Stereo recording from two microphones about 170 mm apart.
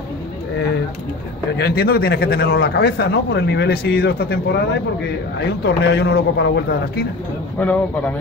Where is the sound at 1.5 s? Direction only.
70° left (ahead or behind).